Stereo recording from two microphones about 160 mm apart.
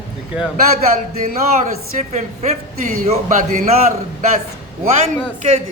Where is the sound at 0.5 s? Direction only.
60° right (ahead or behind).